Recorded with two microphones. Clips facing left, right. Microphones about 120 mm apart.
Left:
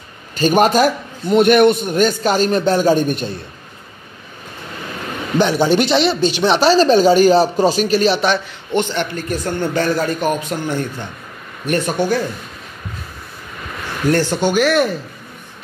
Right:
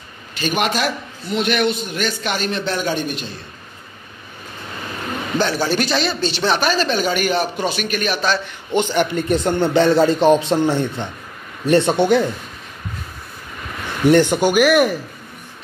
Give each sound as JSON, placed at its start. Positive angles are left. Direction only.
{"t": 0.4, "sound": "a man's voice", "side_deg": 40}
{"t": 5.4, "sound": "speech", "side_deg": 20}
{"t": 6.7, "sound": "speech", "side_deg": 35}
{"t": 8.7, "sound": "a man's voice", "side_deg": -15}
{"t": 14.0, "sound": "speech", "side_deg": -20}